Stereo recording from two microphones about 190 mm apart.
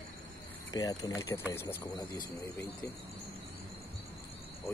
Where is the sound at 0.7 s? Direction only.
20° left (ahead or behind).